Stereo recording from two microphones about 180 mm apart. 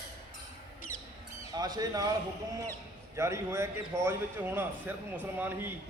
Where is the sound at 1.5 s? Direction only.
20° right (ahead or behind).